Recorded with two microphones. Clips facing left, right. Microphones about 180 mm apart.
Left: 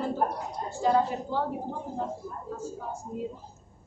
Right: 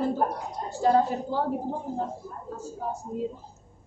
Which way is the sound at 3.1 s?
40° right (ahead or behind).